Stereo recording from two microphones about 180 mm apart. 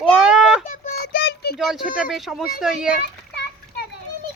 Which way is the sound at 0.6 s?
50° left (ahead or behind).